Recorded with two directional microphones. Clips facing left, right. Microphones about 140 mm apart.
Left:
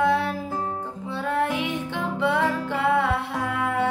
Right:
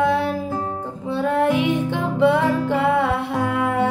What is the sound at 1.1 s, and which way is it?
Music, 20° right (ahead or behind).